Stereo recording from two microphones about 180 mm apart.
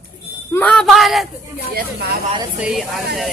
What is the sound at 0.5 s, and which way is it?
Speech, 5° left (ahead or behind).